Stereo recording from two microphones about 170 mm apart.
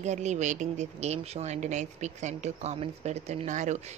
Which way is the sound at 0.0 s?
45° right (ahead or behind).